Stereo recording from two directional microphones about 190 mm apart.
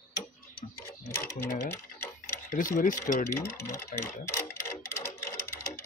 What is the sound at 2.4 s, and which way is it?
Speech, 45° left (ahead or behind).